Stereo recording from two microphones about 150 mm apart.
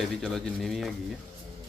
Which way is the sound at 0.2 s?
Centre (ahead or behind).